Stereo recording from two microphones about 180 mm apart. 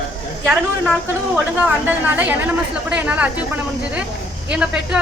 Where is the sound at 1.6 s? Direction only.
10° right (ahead or behind).